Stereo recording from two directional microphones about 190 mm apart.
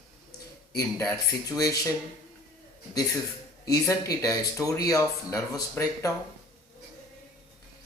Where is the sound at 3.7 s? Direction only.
20° left (ahead or behind).